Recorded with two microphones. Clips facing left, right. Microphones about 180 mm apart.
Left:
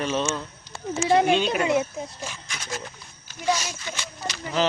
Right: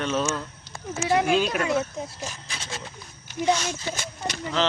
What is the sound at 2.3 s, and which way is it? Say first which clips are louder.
Speech: left 2 dB; 30° right (ahead or behind).